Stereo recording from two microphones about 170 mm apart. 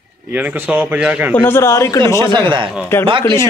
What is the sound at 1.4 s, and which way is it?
A man's voice, 15° left (ahead or behind).